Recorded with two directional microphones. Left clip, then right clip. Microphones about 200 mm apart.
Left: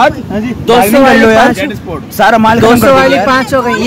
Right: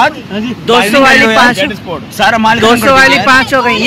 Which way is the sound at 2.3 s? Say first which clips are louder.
Left 1 dB; 50° left (ahead or behind).